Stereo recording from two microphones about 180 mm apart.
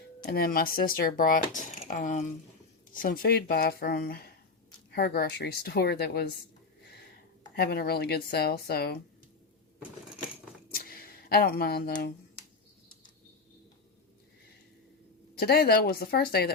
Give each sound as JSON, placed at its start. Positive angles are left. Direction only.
{"t": 0.3, "sound": "a woman's voice", "side_deg": 55}
{"t": 7.5, "sound": "a woman's voice", "side_deg": 60}
{"t": 10.8, "sound": "a sound", "side_deg": 55}
{"t": 15.4, "sound": "a woman's voice", "side_deg": 60}